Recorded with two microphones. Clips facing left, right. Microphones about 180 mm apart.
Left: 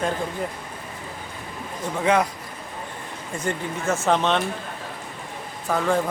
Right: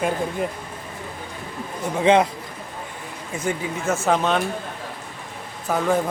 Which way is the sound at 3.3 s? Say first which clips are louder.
Right 2 dB; 5° right (ahead or behind).